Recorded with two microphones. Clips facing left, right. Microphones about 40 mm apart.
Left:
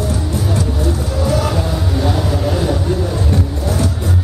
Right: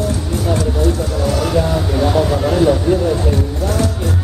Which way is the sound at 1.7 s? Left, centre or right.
Centre.